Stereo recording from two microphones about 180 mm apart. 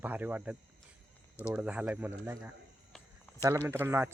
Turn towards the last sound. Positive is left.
turn(degrees=-15)  # may be behind; listen again after turning